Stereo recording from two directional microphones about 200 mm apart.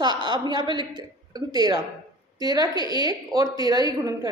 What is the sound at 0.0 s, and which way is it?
A woman's voice, 20° right (ahead or behind).